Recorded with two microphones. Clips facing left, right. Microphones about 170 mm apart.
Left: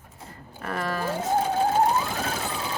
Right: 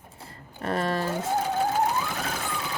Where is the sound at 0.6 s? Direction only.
30° right (ahead or behind).